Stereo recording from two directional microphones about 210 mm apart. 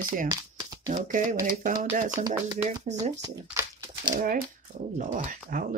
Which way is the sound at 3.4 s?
15° right (ahead or behind).